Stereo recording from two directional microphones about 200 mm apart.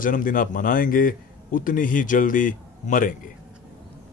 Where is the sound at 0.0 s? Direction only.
45° left (ahead or behind).